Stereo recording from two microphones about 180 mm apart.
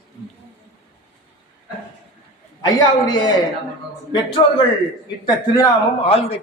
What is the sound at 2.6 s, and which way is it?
Speech, 20° left (ahead or behind).